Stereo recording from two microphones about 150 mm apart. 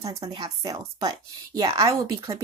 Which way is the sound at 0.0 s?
25° right (ahead or behind).